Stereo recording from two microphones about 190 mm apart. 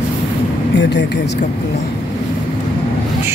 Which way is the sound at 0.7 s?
65° left (ahead or behind).